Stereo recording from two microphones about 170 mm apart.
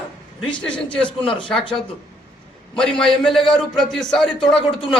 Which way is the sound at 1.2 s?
30° left (ahead or behind).